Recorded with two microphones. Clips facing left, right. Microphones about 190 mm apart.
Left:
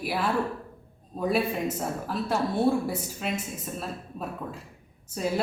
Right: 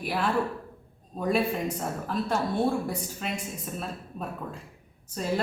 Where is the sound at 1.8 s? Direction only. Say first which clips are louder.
Even; 5° left (ahead or behind).